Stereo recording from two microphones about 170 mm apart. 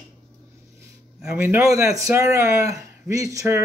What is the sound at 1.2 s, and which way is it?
Speech, 15° right (ahead or behind).